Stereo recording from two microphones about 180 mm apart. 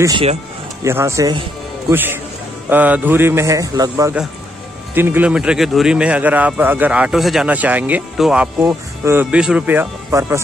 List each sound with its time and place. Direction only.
0.0 s speech: 25° right (ahead or behind)